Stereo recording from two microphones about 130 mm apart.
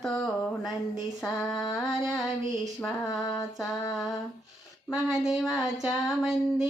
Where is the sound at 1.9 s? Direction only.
Centre (ahead or behind).